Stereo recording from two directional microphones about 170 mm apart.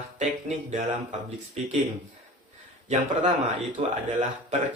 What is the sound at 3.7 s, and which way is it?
Speech, 45° right (ahead or behind).